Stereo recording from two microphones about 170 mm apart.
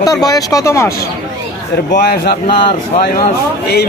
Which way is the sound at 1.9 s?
65° left (ahead or behind).